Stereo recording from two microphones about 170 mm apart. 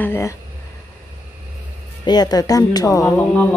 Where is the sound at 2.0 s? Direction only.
25° left (ahead or behind).